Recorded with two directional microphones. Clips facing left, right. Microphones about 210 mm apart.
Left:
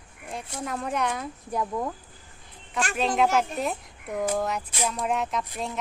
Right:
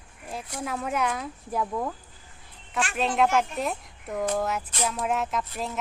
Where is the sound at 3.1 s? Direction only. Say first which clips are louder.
Even; centre (ahead or behind).